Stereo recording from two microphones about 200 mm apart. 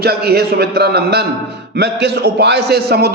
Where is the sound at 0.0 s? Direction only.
50° right (ahead or behind).